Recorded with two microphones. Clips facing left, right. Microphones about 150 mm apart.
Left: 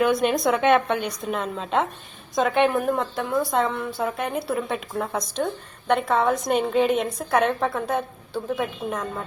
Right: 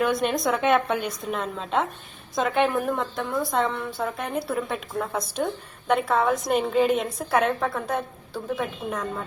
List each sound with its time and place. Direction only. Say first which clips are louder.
0.0 s a woman's voice: left 3 dB; centre (ahead or behind)